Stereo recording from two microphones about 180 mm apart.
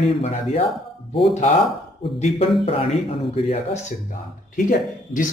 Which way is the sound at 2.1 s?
35° left (ahead or behind).